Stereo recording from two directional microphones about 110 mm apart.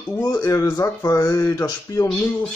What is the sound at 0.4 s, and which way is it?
Speech, 30° left (ahead or behind).